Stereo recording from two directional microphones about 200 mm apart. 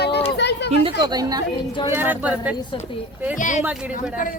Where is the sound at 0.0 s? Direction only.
55° left (ahead or behind).